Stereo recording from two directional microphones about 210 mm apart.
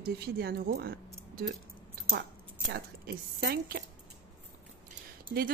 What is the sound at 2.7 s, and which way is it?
A woman's voice, 50° right (ahead or behind).